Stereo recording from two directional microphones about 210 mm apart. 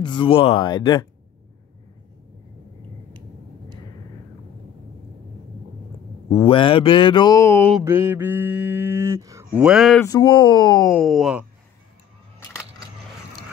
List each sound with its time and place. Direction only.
0.0 s speech: 25° left (ahead or behind)
6.3 s speech: 25° left (ahead or behind)
7.8 s mantra: 10° right (ahead or behind)
10.0 s speech: 20° left (ahead or behind)
11.0 s speech: centre (ahead or behind)